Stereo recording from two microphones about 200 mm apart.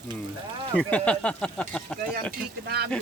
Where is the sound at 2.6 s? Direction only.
55° right (ahead or behind).